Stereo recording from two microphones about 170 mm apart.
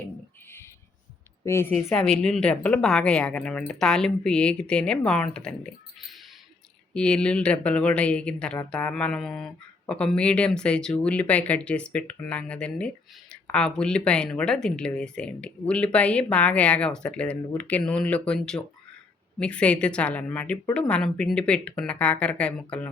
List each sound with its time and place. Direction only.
1.5 s speech: 15° left (ahead or behind)
2.2 s speech: 5° left (ahead or behind)